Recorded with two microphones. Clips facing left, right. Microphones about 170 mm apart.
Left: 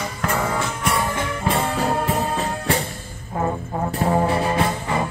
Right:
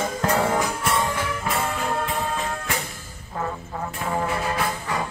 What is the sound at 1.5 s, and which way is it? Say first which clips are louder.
Music: left 6 dB; 30° left (ahead or behind).